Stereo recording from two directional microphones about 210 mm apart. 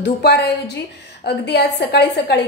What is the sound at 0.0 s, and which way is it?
A woman's voice, 50° left (ahead or behind).